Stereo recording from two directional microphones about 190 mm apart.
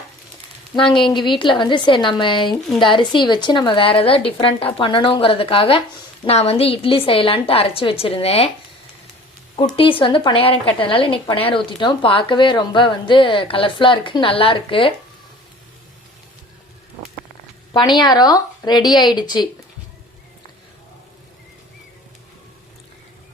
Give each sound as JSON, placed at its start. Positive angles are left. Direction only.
{"t": 0.9, "sound": "a woman's voice", "side_deg": 25}
{"t": 9.7, "sound": "a woman's voice", "side_deg": 30}
{"t": 17.7, "sound": "a woman's voice", "side_deg": 25}